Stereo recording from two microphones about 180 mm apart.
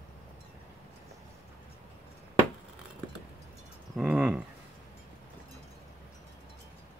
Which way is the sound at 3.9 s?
5° right (ahead or behind).